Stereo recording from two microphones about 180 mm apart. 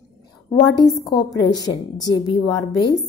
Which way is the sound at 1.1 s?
25° left (ahead or behind).